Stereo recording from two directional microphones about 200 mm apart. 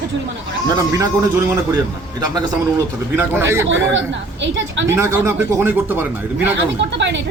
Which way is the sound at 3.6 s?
65° right (ahead or behind).